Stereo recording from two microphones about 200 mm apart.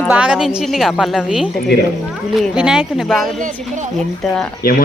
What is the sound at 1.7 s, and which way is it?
Speech, 55° left (ahead or behind).